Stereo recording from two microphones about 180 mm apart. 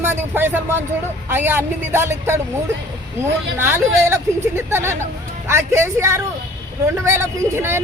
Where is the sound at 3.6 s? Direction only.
15° right (ahead or behind).